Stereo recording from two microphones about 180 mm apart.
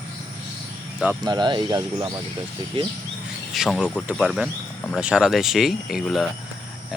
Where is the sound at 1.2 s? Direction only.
25° right (ahead or behind).